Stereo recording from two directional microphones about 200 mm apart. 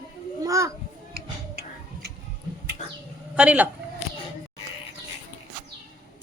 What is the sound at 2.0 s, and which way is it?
Tick-tock, 55° right (ahead or behind).